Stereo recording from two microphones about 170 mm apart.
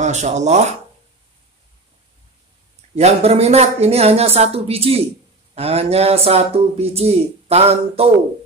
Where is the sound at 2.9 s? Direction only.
35° right (ahead or behind).